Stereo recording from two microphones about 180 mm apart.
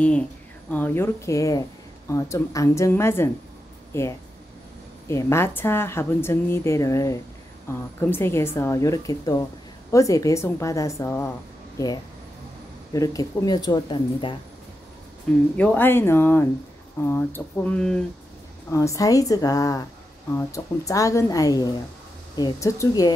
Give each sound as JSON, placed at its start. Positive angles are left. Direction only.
{"t": 0.7, "sound": "speech", "side_deg": 10}
{"t": 15.5, "sound": "speech", "side_deg": 10}
{"t": 18.7, "sound": "speech", "side_deg": 15}